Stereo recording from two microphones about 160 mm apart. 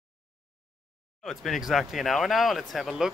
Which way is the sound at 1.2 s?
Centre (ahead or behind).